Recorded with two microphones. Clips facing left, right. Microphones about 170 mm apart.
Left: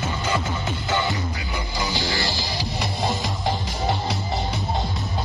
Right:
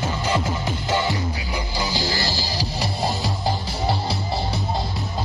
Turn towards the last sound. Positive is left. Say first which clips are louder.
# right 1 dB
turn(degrees=-30)  # may be behind; listen again after turning